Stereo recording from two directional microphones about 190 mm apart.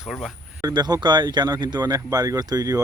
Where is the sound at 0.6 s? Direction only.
20° right (ahead or behind).